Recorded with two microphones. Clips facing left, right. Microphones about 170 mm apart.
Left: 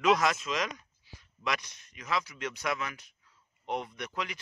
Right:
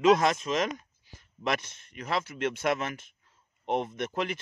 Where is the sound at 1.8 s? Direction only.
55° right (ahead or behind).